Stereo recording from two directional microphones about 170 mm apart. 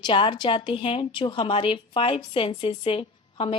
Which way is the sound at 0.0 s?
30° left (ahead or behind).